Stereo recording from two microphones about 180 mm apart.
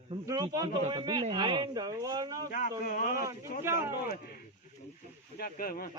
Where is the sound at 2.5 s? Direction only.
50° left (ahead or behind).